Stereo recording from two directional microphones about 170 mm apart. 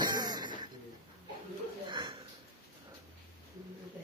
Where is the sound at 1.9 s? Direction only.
30° right (ahead or behind).